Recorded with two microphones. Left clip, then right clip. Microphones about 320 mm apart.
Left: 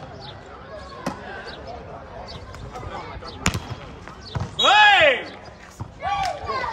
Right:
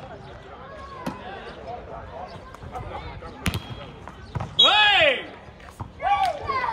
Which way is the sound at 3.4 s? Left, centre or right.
Centre.